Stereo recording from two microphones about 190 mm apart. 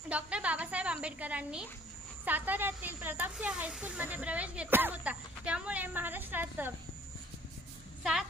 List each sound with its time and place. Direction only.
0.1 s speech: 5° right (ahead or behind)
8.0 s speech: centre (ahead or behind)